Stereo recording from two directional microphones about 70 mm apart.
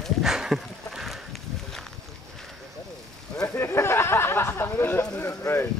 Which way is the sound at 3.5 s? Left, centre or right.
Left.